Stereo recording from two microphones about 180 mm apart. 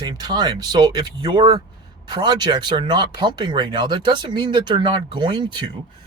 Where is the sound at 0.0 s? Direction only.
25° right (ahead or behind).